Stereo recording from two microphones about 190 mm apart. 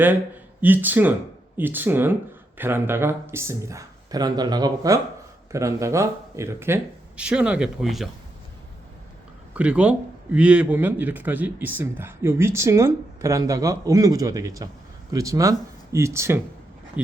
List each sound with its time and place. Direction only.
0.6 s speech: 10° right (ahead or behind)
9.6 s speech: 5° right (ahead or behind)